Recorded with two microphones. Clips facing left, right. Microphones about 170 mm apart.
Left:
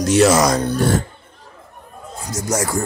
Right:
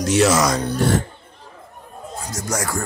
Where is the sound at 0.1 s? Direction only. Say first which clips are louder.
Left 3 dB; 40° left (ahead or behind).